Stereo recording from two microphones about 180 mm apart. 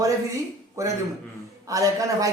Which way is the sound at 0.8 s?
15° right (ahead or behind).